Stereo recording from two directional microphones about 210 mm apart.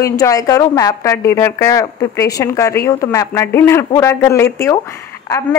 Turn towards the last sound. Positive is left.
turn(degrees=15)  # may be behind; listen again after turning